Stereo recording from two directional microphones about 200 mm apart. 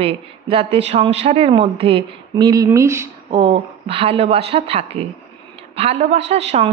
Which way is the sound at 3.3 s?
30° right (ahead or behind).